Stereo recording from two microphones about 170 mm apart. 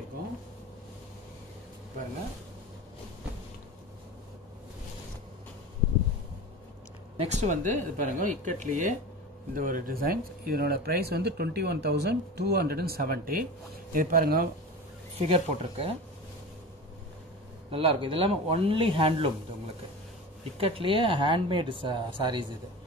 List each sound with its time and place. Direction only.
7.2 s speech: 45° right (ahead or behind); by 14.5 s 60° right (ahead or behind)
15.1 s speech: 35° right (ahead or behind)
17.6 s speech: 30° right (ahead or behind)
20.5 s speech: 35° right (ahead or behind)